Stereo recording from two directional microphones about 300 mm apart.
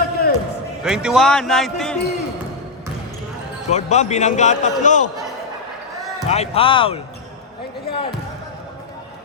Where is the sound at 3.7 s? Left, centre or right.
Left.